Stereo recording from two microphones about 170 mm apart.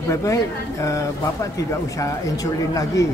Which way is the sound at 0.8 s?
20° left (ahead or behind).